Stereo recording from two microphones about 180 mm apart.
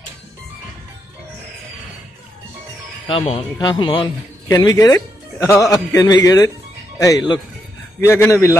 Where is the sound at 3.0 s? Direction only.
30° left (ahead or behind).